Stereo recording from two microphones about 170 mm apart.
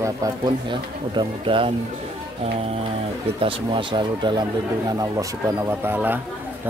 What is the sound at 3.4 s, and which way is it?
Speech, 30° right (ahead or behind).